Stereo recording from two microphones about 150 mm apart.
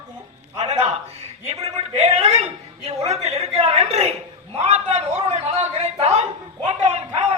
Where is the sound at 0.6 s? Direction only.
45° right (ahead or behind).